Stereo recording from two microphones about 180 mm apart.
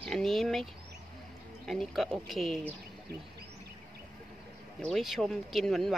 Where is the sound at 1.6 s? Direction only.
Centre (ahead or behind).